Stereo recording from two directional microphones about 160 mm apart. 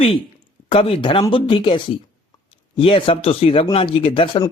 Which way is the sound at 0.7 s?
35° left (ahead or behind).